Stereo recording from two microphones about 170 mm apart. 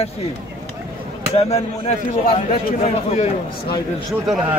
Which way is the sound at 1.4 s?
40° left (ahead or behind).